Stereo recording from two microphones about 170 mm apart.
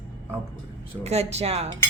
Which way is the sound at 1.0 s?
40° right (ahead or behind).